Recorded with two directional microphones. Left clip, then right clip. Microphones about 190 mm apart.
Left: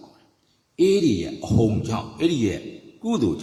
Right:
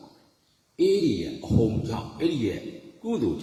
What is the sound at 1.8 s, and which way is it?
A man's voice, 30° left (ahead or behind).